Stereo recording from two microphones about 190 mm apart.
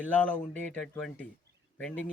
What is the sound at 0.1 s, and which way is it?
Speech, 5° left (ahead or behind).